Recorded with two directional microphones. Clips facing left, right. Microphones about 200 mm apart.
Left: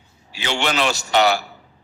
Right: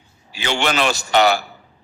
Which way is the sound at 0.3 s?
50° right (ahead or behind).